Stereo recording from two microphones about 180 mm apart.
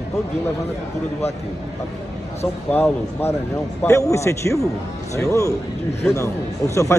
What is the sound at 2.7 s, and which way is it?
Speech, 15° left (ahead or behind).